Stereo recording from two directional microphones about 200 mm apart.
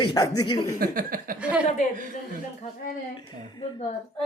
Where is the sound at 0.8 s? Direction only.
45° right (ahead or behind).